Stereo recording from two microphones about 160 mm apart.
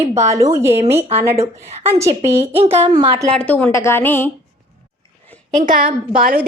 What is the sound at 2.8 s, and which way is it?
Speech, 30° right (ahead or behind).